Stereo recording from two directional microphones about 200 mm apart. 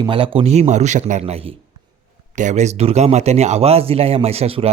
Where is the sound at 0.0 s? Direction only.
25° right (ahead or behind).